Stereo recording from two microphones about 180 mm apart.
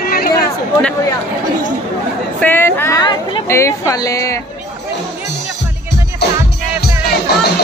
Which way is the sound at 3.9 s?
20° left (ahead or behind).